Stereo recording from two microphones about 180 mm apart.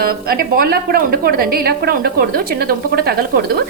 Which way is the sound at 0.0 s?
55° right (ahead or behind).